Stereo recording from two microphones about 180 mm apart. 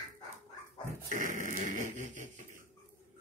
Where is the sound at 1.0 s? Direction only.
45° right (ahead or behind).